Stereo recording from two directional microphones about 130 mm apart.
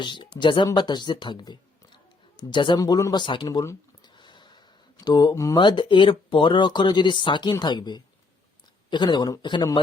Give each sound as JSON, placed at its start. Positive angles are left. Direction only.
{"t": 0.0, "sound": "speech", "side_deg": 35}
{"t": 3.4, "sound": "speech", "side_deg": 20}
{"t": 4.0, "sound": "a sound", "side_deg": 35}
{"t": 5.5, "sound": "speech", "side_deg": 40}